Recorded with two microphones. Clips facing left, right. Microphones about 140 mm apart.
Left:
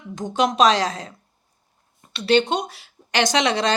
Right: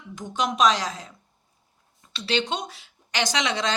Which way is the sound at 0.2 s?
70° left (ahead or behind).